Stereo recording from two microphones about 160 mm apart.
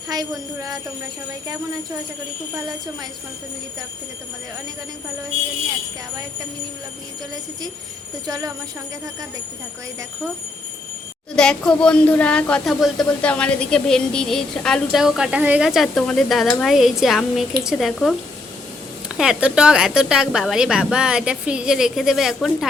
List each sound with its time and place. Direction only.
0.1 s jingle bell: 25° right (ahead or behind)
8.3 s jingle bell: 20° right (ahead or behind)
11.3 s speech: 5° left (ahead or behind)
19.1 s speech: 5° right (ahead or behind)